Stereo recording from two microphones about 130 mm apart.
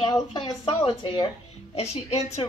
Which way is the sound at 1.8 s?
55° left (ahead or behind).